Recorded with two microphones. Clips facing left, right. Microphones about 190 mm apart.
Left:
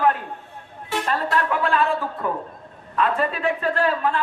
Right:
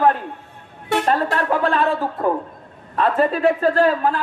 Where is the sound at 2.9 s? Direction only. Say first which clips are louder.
Right 4 dB; 40° right (ahead or behind).